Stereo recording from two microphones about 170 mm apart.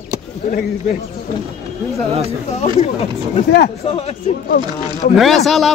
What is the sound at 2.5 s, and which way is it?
Speech, 40° left (ahead or behind).